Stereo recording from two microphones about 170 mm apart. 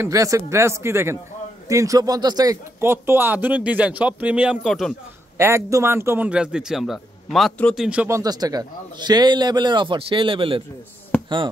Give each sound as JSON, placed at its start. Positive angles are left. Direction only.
{"t": 0.0, "sound": "speech", "side_deg": -20}
{"t": 5.4, "sound": "a man's voice", "side_deg": -15}
{"t": 8.1, "sound": "a man's voice", "side_deg": -20}